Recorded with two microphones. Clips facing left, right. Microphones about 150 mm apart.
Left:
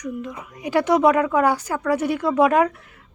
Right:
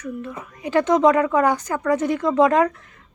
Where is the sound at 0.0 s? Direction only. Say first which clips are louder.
Left 1 dB; 15° left (ahead or behind).